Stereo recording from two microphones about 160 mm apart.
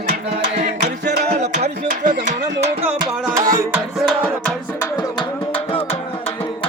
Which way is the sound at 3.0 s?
25° right (ahead or behind).